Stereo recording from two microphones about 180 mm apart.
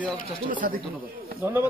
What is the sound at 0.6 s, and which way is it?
Speech, 55° right (ahead or behind).